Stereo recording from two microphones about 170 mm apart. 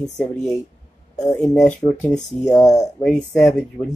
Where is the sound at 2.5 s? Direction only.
20° left (ahead or behind).